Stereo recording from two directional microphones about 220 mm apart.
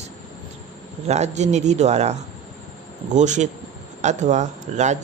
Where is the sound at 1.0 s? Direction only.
30° right (ahead or behind).